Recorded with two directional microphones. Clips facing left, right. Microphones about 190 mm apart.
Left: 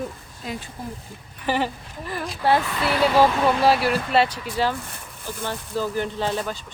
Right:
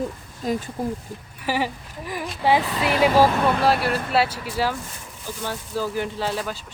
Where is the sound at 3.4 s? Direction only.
Centre (ahead or behind).